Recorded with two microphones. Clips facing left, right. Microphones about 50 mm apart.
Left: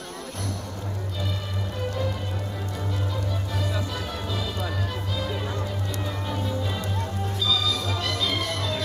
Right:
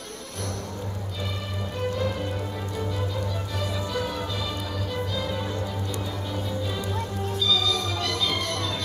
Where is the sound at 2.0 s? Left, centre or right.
Centre.